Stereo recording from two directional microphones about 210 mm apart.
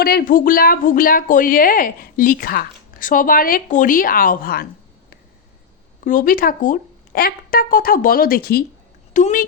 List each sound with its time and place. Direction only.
0.0 s speech: 45° left (ahead or behind)
6.1 s speech: 40° left (ahead or behind)